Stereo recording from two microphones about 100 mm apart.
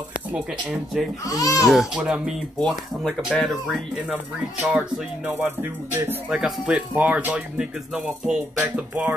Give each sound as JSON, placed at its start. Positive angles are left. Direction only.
{"t": 1.2, "sound": "speech", "side_deg": 35}
{"t": 1.7, "sound": "music", "side_deg": -5}
{"t": 2.6, "sound": "speech", "side_deg": 5}
{"t": 3.3, "sound": "music", "side_deg": -5}
{"t": 6.2, "sound": "music", "side_deg": -5}